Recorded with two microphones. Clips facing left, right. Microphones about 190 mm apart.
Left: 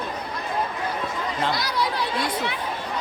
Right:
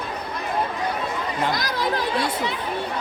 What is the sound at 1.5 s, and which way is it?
Speech, 45° right (ahead or behind).